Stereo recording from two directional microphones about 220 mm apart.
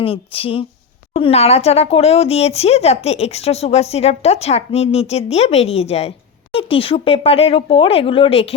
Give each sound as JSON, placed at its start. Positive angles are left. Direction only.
{"t": 0.0, "sound": "speech", "side_deg": 25}